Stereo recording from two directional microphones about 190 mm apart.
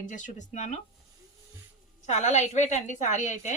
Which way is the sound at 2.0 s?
35° left (ahead or behind).